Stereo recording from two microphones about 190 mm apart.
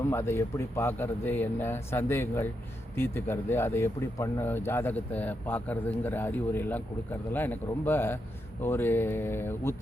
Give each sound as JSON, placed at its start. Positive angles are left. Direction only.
{"t": 0.0, "sound": "speech", "side_deg": 15}